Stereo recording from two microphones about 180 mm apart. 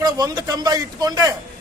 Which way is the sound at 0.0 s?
20° right (ahead or behind).